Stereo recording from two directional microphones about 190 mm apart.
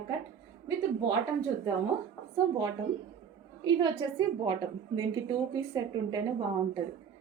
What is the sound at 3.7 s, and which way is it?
Speech, 25° right (ahead or behind).